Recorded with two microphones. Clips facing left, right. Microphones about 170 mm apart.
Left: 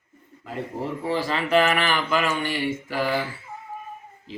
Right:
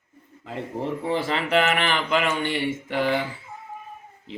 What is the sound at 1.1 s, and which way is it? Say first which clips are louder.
A man's voice: left 2 dB; 25° right (ahead or behind).